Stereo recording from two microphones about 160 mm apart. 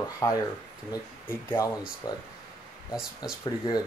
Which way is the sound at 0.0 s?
20° left (ahead or behind).